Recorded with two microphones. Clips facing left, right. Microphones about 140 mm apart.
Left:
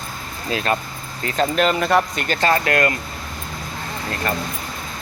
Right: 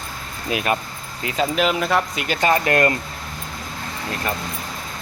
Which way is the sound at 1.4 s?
5° right (ahead or behind).